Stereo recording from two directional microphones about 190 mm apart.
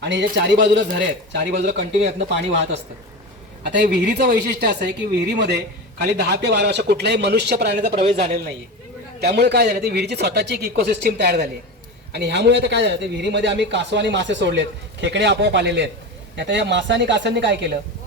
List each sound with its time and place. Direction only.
0.0 s a man's voice: 65° right (ahead or behind)